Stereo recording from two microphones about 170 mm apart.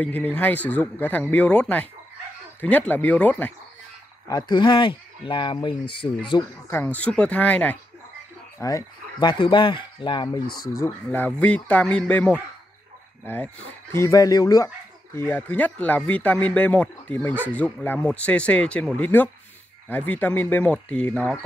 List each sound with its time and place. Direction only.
0.0 s speech: 10° left (ahead or behind)
4.3 s speech: 25° left (ahead or behind)
6.7 s speech: 10° left (ahead or behind)
8.5 s speech: 20° left (ahead or behind)
10.8 s speech: 10° left (ahead or behind)